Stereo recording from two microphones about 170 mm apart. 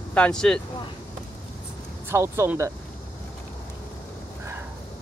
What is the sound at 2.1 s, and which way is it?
Speech, 15° right (ahead or behind).